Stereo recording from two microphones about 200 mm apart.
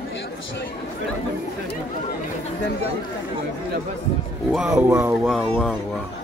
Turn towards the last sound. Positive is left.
turn(degrees=-5)  # may be behind; listen again after turning